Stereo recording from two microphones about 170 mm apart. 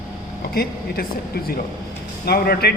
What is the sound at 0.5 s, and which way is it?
Speech, 65° left (ahead or behind).